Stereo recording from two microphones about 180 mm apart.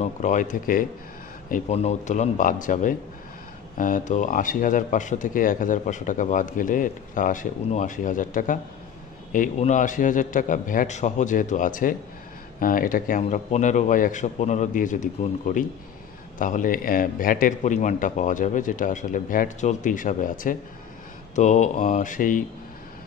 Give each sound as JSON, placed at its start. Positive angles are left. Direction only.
{"t": 0.0, "sound": "speech", "side_deg": 45}
{"t": 1.5, "sound": "speech", "side_deg": 40}
{"t": 16.3, "sound": "speech", "side_deg": 45}